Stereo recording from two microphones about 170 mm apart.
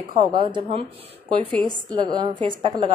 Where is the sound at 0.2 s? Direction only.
30° right (ahead or behind).